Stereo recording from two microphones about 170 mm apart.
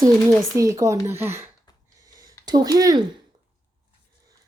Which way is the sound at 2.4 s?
25° right (ahead or behind).